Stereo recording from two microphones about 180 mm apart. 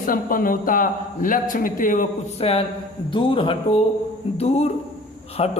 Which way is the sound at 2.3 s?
35° left (ahead or behind).